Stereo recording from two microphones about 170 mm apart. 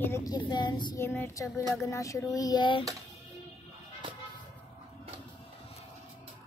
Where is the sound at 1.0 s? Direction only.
15° left (ahead or behind).